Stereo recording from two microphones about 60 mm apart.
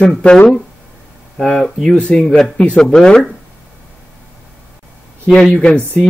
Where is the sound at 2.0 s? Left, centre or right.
Centre.